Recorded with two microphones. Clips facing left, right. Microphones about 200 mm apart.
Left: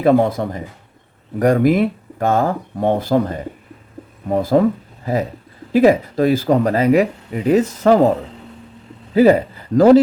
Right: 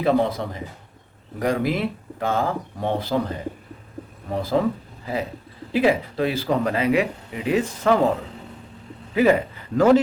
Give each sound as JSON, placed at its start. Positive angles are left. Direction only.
{"t": 0.0, "sound": "speech", "side_deg": 50}
{"t": 5.7, "sound": "speech", "side_deg": 45}
{"t": 9.1, "sound": "a man's voice", "side_deg": 35}